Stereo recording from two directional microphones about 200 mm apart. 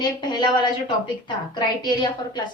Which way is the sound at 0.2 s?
20° left (ahead or behind).